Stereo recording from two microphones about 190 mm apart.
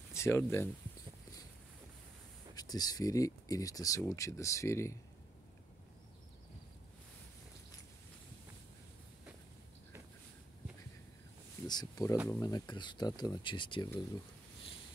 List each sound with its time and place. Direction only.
0.1 s speech: 15° left (ahead or behind)
2.5 s speech: 20° left (ahead or behind)
11.6 s speech: 20° left (ahead or behind)